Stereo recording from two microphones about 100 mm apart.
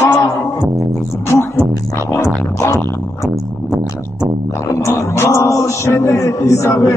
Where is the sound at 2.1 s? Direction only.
25° left (ahead or behind).